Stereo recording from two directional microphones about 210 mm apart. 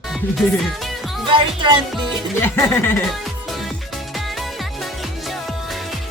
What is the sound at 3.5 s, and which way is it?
Music, centre (ahead or behind).